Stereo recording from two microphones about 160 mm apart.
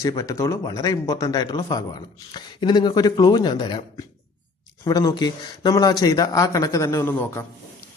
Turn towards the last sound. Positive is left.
turn(degrees=15)  # may be behind; listen again after turning